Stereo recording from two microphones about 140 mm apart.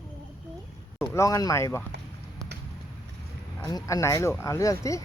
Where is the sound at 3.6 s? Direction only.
25° left (ahead or behind).